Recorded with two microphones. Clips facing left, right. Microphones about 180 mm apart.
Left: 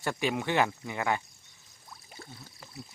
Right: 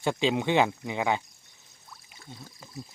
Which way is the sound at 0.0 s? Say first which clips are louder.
Right 4 dB; 20° right (ahead or behind).